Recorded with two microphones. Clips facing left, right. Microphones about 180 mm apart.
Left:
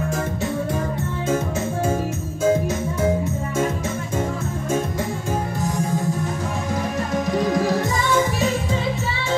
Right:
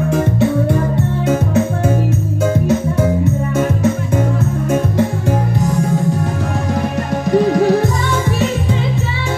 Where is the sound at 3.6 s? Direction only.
65° right (ahead or behind).